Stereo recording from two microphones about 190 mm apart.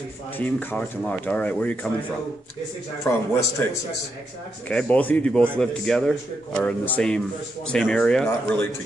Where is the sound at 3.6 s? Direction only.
10° left (ahead or behind).